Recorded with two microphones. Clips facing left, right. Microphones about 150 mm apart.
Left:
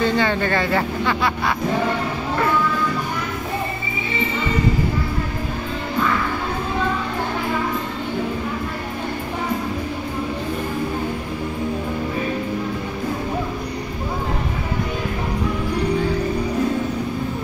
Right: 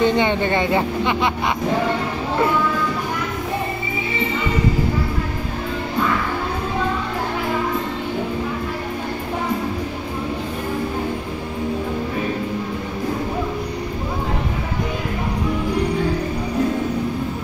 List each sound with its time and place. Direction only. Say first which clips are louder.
0.0 s speech: right 2 dB; 20° right (ahead or behind)